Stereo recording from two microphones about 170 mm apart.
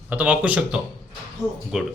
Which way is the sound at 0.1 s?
10° right (ahead or behind).